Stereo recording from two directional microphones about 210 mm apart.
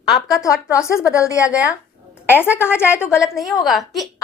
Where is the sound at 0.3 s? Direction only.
15° left (ahead or behind).